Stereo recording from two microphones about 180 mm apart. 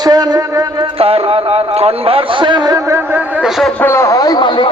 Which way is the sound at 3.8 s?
15° left (ahead or behind).